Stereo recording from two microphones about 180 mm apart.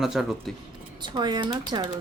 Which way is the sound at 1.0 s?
25° right (ahead or behind).